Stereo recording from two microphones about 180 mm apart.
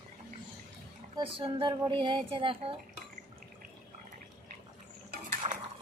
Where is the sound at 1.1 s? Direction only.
30° right (ahead or behind).